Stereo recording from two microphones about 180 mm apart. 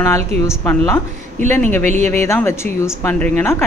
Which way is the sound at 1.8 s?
40° right (ahead or behind).